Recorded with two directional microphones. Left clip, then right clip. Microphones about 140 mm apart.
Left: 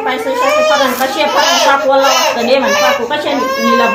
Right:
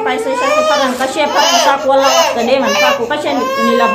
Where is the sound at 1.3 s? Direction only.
35° right (ahead or behind).